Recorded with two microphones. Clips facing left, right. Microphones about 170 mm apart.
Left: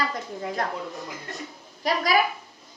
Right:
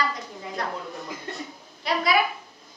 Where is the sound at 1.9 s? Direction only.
45° left (ahead or behind).